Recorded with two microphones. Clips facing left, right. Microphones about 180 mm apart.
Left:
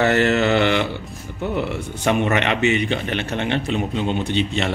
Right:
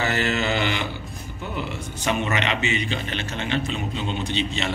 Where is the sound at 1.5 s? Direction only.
65° left (ahead or behind).